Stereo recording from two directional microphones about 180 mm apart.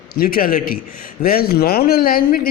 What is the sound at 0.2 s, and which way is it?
A man's voice, 55° left (ahead or behind).